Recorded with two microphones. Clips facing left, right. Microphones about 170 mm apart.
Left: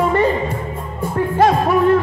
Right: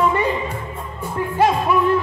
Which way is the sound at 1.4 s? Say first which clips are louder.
Left 2 dB; 45° left (ahead or behind).